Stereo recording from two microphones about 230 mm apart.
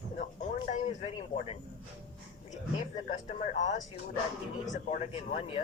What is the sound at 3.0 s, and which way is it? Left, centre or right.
A woman's voice, left.